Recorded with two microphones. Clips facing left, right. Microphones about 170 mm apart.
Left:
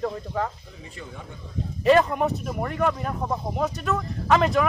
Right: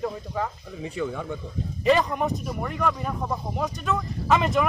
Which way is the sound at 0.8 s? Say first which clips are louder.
Right 11 dB; 70° right (ahead or behind).